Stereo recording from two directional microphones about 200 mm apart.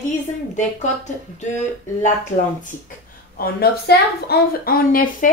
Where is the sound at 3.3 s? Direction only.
50° left (ahead or behind).